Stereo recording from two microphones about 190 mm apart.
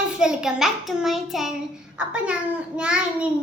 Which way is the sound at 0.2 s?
5° right (ahead or behind).